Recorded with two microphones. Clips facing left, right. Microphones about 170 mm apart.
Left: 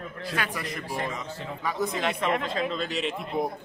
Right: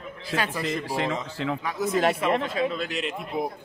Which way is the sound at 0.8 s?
90° right.